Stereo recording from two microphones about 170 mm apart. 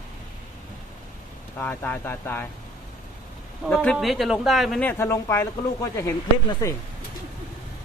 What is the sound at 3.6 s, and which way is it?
A man's voice, 5° left (ahead or behind).